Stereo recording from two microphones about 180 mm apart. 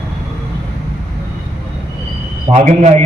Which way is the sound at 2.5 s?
40° right (ahead or behind).